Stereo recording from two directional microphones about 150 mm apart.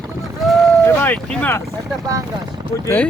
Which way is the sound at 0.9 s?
10° left (ahead or behind).